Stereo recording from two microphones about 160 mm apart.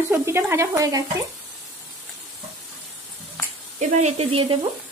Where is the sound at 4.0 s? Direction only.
40° right (ahead or behind).